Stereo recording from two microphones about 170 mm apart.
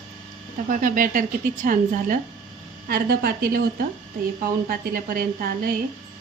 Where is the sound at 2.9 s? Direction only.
65° right (ahead or behind).